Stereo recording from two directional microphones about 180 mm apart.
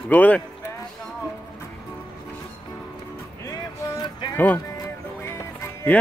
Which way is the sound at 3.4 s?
20° left (ahead or behind).